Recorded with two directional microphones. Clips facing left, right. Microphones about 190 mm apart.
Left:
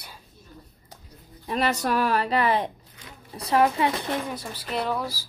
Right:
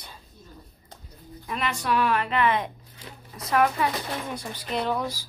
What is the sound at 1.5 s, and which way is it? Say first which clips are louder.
A woman's voice: left 3 dB; 40° left (ahead or behind).